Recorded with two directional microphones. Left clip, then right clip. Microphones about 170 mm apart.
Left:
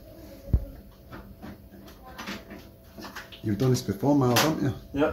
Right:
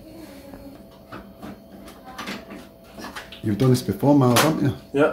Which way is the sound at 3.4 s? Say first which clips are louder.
Right 5 dB; 10° right (ahead or behind).